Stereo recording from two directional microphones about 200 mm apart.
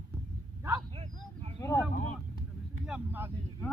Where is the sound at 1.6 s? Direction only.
15° left (ahead or behind).